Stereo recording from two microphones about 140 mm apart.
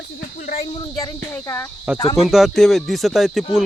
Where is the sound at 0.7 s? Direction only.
25° left (ahead or behind).